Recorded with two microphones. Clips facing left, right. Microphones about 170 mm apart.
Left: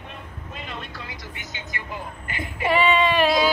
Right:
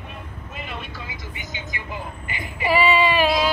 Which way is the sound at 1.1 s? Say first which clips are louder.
Right 2 dB; centre (ahead or behind).